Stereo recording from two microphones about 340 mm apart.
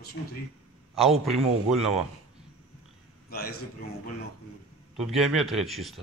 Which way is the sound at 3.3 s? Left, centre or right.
Left.